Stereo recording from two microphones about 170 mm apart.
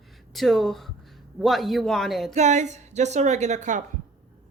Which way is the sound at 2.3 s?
45° right (ahead or behind).